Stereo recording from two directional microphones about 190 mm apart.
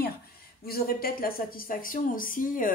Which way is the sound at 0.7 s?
50° left (ahead or behind).